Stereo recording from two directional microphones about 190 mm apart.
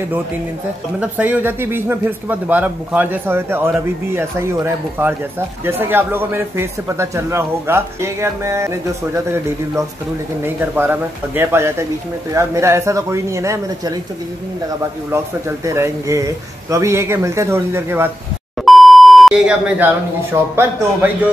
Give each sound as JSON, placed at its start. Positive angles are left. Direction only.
{"t": 0.9, "sound": "speech", "side_deg": -10}
{"t": 15.4, "sound": "speech", "side_deg": -15}
{"t": 18.7, "sound": "speech", "side_deg": 0}